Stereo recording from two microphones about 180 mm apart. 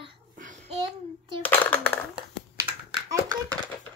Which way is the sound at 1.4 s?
10° left (ahead or behind).